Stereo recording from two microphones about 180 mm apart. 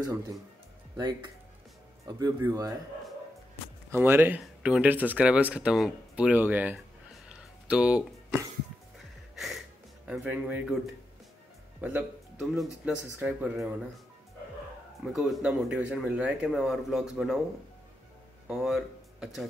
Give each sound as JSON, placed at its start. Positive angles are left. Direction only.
{"t": 0.0, "sound": "speech", "side_deg": -20}
{"t": 3.9, "sound": "speech", "side_deg": -10}
{"t": 7.2, "sound": "a sound", "side_deg": -5}
{"t": 9.3, "sound": "music", "side_deg": 0}
{"t": 10.0, "sound": "speech", "side_deg": -5}
{"t": 11.8, "sound": "speech", "side_deg": -5}
{"t": 15.1, "sound": "speech", "side_deg": 0}
{"t": 18.5, "sound": "speech", "side_deg": 0}